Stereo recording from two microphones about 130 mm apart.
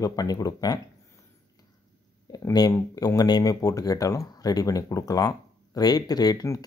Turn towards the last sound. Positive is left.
turn(degrees=30)  # may be behind; listen again after turning